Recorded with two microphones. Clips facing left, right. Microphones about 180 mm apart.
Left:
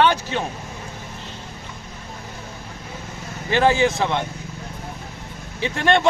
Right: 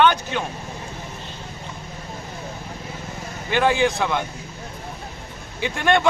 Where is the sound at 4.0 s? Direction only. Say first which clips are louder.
Left 1 dB; 25° left (ahead or behind).